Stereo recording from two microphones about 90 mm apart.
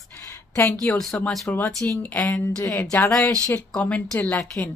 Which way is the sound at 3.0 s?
10° left (ahead or behind).